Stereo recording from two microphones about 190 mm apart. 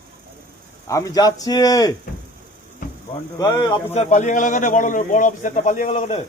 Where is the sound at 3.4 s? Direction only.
20° left (ahead or behind).